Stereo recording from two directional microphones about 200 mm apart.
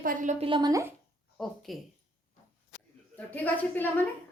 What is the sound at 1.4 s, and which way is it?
Child singing, centre (ahead or behind).